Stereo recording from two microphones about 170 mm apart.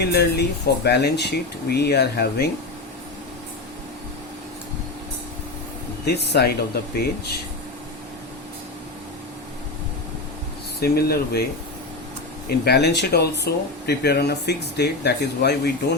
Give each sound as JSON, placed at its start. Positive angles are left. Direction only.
{"t": 0.0, "sound": "speech", "side_deg": 75}
{"t": 6.1, "sound": "speech", "side_deg": 75}
{"t": 10.8, "sound": "speech", "side_deg": 65}
{"t": 12.5, "sound": "speech", "side_deg": 75}